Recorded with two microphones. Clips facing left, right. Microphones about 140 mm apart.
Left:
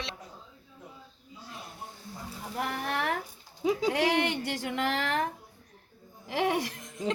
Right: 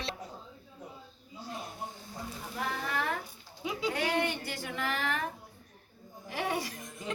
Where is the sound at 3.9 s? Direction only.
85° left.